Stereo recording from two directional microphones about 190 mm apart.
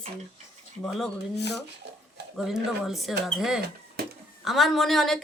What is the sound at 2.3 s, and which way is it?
A woman's voice, centre (ahead or behind).